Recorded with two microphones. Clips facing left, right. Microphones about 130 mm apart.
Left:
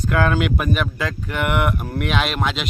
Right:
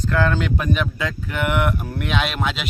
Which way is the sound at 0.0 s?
15° left (ahead or behind).